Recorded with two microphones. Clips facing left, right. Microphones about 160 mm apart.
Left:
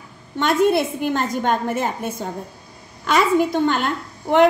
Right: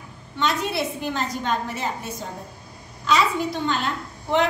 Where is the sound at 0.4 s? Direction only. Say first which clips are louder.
Left 7 dB; 50° left (ahead or behind).